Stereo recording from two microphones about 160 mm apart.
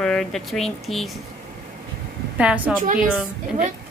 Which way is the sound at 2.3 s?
10° right (ahead or behind).